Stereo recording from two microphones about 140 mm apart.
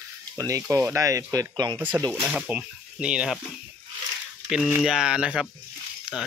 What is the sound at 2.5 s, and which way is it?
Speech, 10° right (ahead or behind).